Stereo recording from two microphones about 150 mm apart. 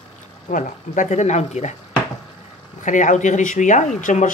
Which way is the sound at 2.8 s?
55° left (ahead or behind).